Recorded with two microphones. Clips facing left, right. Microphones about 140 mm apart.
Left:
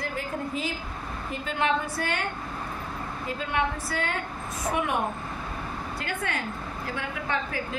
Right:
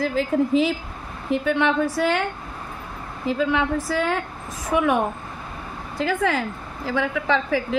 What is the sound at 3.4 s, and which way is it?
Speech, 90° right.